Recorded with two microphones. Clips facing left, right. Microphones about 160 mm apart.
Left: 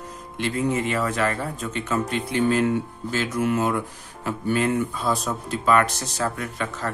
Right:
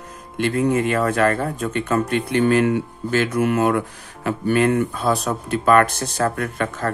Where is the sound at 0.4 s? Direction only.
55° right (ahead or behind).